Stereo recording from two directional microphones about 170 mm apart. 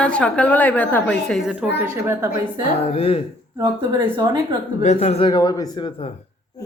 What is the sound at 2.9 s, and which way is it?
Speech, 35° left (ahead or behind).